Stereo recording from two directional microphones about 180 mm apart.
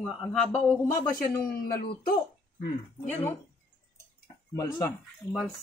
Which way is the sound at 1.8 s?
60° left (ahead or behind).